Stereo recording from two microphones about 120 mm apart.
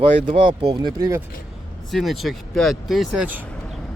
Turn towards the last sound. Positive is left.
turn(degrees=0)  # may be behind; listen again after turning